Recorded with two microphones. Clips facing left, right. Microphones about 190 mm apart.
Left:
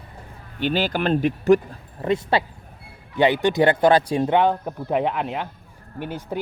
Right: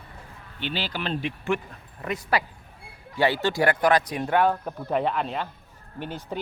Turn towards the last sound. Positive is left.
turn(degrees=10)  # may be behind; listen again after turning